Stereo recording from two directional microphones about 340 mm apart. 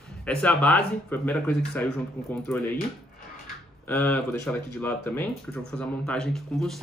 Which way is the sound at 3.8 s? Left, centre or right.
Centre.